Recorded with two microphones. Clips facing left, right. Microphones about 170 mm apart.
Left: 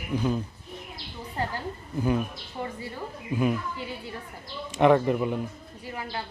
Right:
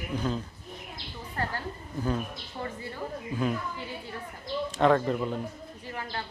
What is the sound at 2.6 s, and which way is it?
Speech, 20° left (ahead or behind).